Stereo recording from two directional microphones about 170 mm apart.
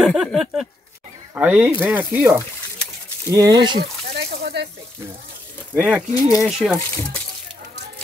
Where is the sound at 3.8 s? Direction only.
65° right (ahead or behind).